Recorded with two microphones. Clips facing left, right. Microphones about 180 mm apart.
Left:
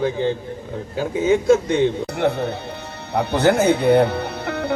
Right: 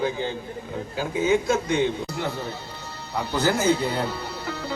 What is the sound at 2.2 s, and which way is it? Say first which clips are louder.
A man's voice: left 9 dB; 65° left (ahead or behind).